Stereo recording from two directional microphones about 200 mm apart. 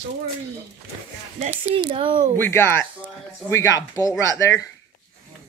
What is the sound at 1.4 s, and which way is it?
Speech, 25° right (ahead or behind).